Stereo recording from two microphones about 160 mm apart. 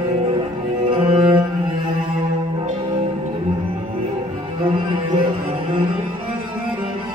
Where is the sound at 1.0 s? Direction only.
35° right (ahead or behind).